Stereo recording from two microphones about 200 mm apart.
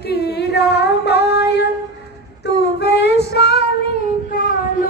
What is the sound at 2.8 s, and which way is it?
Child singing, 55° left (ahead or behind).